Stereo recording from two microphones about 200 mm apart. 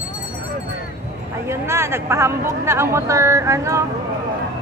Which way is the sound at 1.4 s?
15° right (ahead or behind).